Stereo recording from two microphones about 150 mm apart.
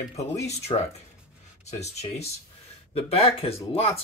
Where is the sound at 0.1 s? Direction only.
45° left (ahead or behind).